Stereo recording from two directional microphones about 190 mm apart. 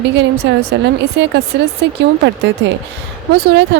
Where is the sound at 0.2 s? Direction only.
60° right (ahead or behind).